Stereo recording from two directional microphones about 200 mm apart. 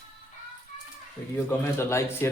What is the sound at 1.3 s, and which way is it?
Speech, 10° left (ahead or behind).